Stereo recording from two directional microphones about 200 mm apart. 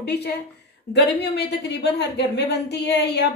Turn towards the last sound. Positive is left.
turn(degrees=55)  # may be behind; listen again after turning